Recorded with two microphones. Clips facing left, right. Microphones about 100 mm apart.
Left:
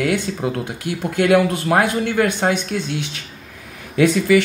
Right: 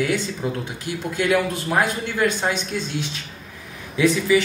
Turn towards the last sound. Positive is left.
turn(degrees=65)  # may be behind; listen again after turning